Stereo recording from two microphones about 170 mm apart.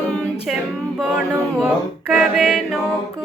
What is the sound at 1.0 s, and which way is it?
A capella, 5° right (ahead or behind).